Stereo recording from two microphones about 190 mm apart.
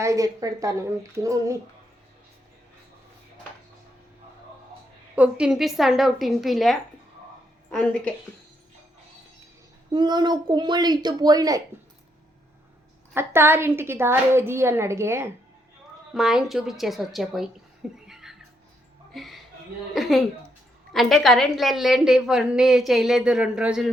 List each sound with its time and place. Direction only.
0.0 s a woman's voice: 15° right (ahead or behind)
5.1 s a woman's voice: 5° right (ahead or behind)
9.9 s a woman's voice: 20° right (ahead or behind)
13.1 s a woman's voice: 10° right (ahead or behind)
16.1 s a woman's voice: 5° right (ahead or behind)
18.1 s music: 5° right (ahead or behind)
19.1 s a woman's voice: centre (ahead or behind)